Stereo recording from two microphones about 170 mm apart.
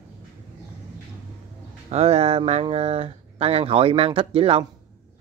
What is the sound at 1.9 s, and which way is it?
Speech, 40° right (ahead or behind).